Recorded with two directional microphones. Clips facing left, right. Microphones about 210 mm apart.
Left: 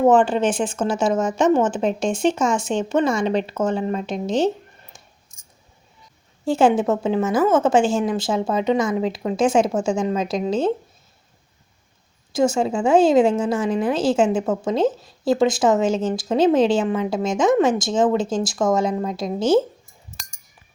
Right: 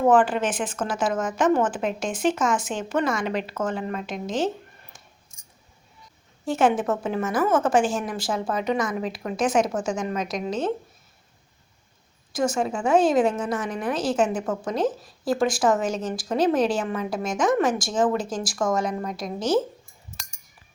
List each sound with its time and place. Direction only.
0.0 s a woman's voice: 25° left (ahead or behind)
6.4 s a woman's voice: 30° left (ahead or behind)
12.3 s a woman's voice: 25° left (ahead or behind)